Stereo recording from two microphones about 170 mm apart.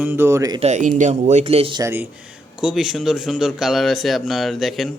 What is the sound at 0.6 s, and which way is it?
Speech, 45° right (ahead or behind).